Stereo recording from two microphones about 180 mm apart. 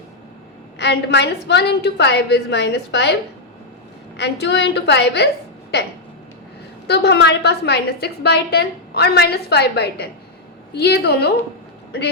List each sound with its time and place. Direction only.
0.8 s a woman's voice: 70° left (ahead or behind)
4.2 s a woman's voice: 70° left (ahead or behind)
6.8 s a woman's voice: 65° left (ahead or behind)